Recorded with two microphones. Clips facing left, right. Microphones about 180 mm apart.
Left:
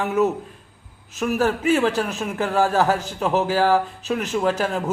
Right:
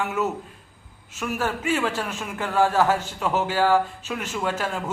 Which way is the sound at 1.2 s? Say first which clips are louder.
Left 6 dB; 40° left (ahead or behind).